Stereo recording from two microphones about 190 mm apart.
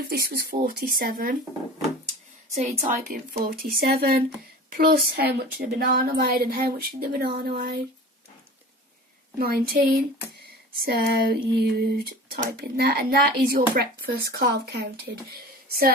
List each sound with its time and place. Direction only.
0.1 s a woman's voice: 55° right (ahead or behind)
2.6 s a woman's voice: 45° right (ahead or behind)
9.4 s a woman's voice: 55° right (ahead or behind)